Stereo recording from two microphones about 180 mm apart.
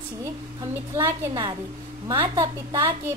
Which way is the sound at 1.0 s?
20° right (ahead or behind).